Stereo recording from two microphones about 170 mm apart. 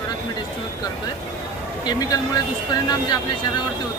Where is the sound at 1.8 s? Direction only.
25° left (ahead or behind).